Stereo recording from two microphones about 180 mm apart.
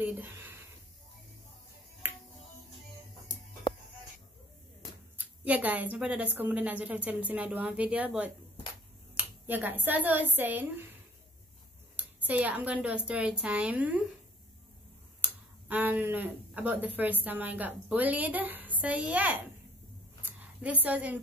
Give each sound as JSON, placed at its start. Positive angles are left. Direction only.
{"t": 0.0, "sound": "a sound", "side_deg": -10}
{"t": 2.0, "sound": "finger snapping", "side_deg": -10}
{"t": 3.3, "sound": "music", "side_deg": 45}
{"t": 5.1, "sound": "speech", "side_deg": -10}
{"t": 12.0, "sound": "speech", "side_deg": -10}
{"t": 15.2, "sound": "speech", "side_deg": -10}
{"t": 20.2, "sound": "a sound", "side_deg": -10}